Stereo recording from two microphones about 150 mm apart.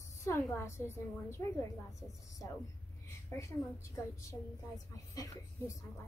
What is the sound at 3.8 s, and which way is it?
A woman's voice, 20° left (ahead or behind).